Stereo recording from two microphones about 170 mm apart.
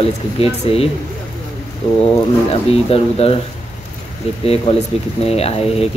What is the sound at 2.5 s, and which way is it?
Speech, 35° left (ahead or behind).